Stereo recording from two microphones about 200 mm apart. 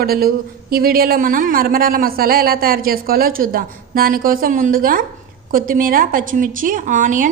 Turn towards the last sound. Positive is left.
turn(degrees=-40)  # may be behind; listen again after turning